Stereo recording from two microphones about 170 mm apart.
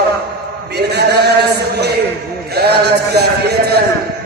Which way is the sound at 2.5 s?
70° right (ahead or behind).